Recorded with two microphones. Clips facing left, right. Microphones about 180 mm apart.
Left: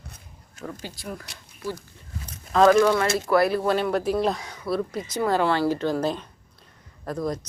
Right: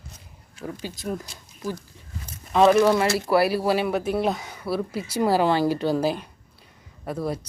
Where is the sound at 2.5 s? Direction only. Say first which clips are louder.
Even; 5° right (ahead or behind).